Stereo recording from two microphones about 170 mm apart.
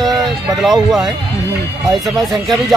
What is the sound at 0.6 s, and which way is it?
Speech, centre (ahead or behind).